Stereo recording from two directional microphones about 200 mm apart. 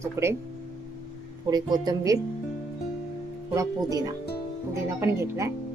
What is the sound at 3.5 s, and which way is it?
Speech, 15° right (ahead or behind).